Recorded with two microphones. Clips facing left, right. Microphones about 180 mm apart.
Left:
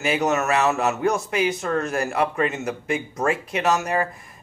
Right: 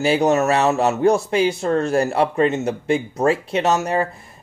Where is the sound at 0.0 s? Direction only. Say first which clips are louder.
Right 5 dB; 30° right (ahead or behind).